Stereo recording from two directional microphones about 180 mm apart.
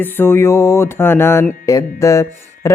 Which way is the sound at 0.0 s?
10° left (ahead or behind).